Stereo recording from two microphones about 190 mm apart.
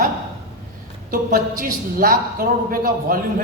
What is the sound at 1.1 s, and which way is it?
A man's voice, 45° right (ahead or behind).